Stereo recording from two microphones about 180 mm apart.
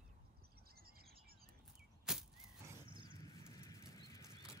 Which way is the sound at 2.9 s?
25° right (ahead or behind).